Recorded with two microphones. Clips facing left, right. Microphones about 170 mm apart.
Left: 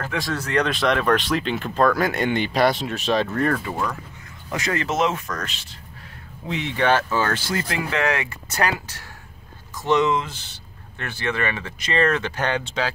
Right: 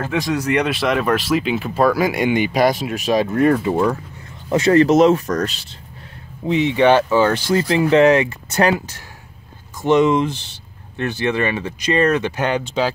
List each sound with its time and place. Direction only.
0.0 s speech: 20° right (ahead or behind); by 5.8 s 35° right (ahead or behind)
6.4 s speech: 20° right (ahead or behind)